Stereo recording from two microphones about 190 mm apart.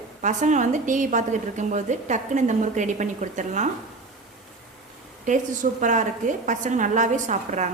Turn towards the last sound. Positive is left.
turn(degrees=-40)  # may be behind; listen again after turning